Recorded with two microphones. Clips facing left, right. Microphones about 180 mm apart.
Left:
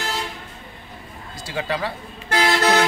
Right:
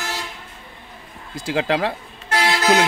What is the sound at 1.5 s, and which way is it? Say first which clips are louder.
Speech: right 5 dB; 90° right.